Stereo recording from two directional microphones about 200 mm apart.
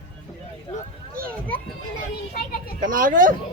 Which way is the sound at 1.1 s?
45° right (ahead or behind).